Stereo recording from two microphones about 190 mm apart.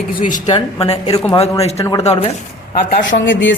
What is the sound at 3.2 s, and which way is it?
Speech, 75° left (ahead or behind).